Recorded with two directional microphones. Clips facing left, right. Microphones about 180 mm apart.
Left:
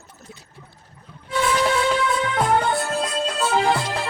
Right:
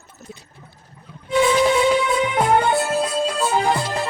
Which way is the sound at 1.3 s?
15° right (ahead or behind).